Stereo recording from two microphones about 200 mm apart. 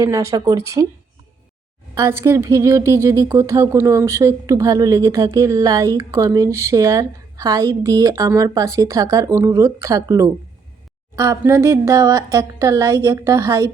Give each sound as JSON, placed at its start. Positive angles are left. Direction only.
{"t": 0.0, "sound": "a woman's voice", "side_deg": -15}
{"t": 2.0, "sound": "a woman's voice", "side_deg": -15}